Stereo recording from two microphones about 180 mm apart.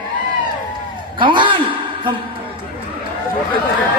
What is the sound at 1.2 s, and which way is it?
Speech, 25° right (ahead or behind).